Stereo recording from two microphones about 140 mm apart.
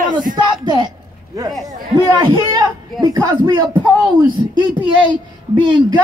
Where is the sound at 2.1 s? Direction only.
30° right (ahead or behind).